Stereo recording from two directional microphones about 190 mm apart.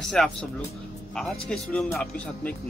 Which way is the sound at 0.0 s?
5° left (ahead or behind).